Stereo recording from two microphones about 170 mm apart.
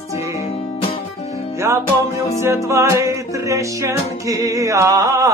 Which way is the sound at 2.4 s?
15° right (ahead or behind).